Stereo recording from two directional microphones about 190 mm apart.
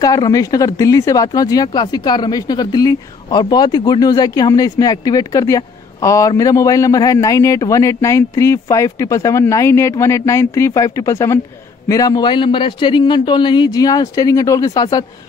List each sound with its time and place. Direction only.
0.0 s speech: 20° left (ahead or behind)